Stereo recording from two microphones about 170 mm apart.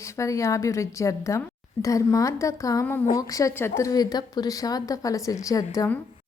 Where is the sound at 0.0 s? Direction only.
20° left (ahead or behind).